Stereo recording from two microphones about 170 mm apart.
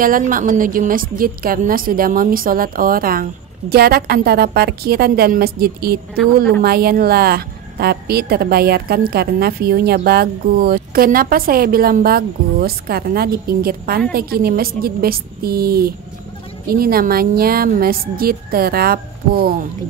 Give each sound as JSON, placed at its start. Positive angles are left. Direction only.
{"t": 0.0, "sound": "a woman's voice", "side_deg": -55}